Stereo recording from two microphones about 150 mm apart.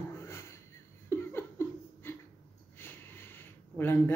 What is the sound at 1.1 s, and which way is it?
Laughter, 15° left (ahead or behind).